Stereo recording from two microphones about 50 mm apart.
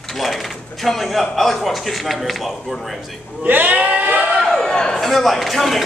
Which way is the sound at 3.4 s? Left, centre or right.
Right.